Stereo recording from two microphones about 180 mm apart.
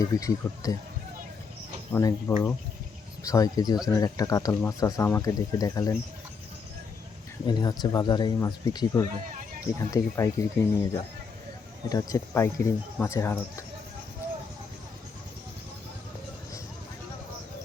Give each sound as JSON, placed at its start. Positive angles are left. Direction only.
{"t": 0.0, "sound": "speech", "side_deg": 20}
{"t": 1.9, "sound": "speech", "side_deg": 15}
{"t": 7.4, "sound": "speech", "side_deg": 25}